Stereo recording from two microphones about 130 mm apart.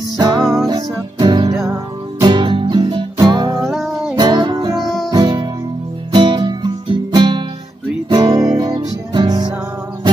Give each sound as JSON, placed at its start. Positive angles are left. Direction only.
{"t": 0.2, "sound": "music", "side_deg": -35}
{"t": 3.7, "sound": "music", "side_deg": -5}
{"t": 4.1, "sound": "music", "side_deg": -35}